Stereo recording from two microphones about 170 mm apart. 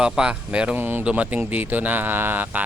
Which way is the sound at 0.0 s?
5° right (ahead or behind).